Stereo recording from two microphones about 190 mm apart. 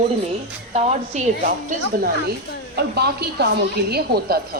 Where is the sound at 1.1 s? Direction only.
35° right (ahead or behind).